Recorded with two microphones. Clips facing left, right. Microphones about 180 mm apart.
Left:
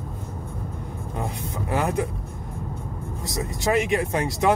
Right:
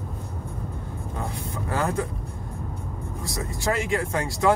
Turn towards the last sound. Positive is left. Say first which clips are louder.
# left 1 dB
turn(degrees=20)  # may be behind; listen again after turning